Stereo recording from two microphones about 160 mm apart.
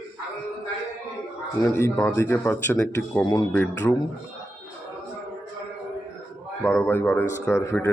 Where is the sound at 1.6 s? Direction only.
15° left (ahead or behind).